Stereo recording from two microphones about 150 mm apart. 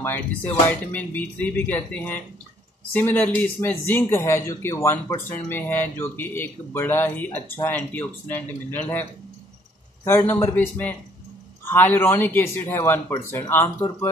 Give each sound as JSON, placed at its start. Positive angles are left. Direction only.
{"t": 0.7, "sound": "speech", "side_deg": 10}
{"t": 10.0, "sound": "speech", "side_deg": 15}